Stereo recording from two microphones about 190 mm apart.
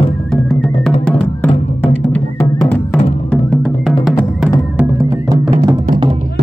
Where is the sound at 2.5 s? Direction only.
15° left (ahead or behind).